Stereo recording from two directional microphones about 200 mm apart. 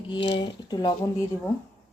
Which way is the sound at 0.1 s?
25° left (ahead or behind).